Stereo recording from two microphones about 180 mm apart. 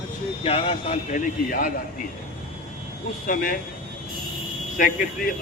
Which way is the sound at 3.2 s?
50° left (ahead or behind).